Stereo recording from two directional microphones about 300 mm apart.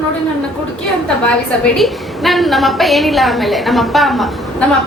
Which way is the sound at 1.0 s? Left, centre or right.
Centre.